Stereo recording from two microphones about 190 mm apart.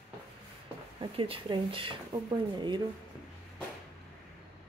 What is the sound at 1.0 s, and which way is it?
Speech, 30° right (ahead or behind).